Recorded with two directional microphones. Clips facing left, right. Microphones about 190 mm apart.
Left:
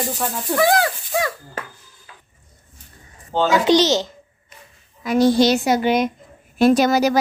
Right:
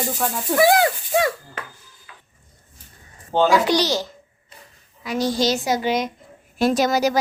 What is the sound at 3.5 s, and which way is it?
Speech, 20° left (ahead or behind).